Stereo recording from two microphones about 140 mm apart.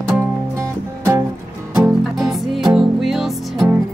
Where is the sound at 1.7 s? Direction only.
Centre (ahead or behind).